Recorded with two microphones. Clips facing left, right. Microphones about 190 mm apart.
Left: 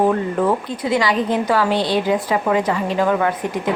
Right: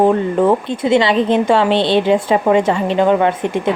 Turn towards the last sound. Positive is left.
turn(degrees=-25)  # may be behind; listen again after turning